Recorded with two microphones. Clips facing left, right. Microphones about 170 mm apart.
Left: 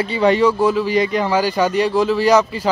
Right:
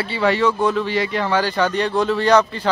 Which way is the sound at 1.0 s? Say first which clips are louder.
Left 3 dB; 15° left (ahead or behind).